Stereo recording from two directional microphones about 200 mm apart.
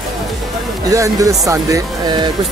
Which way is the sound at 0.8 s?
15° right (ahead or behind).